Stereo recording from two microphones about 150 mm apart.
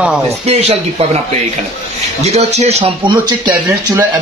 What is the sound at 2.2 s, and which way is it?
Speech, 45° right (ahead or behind).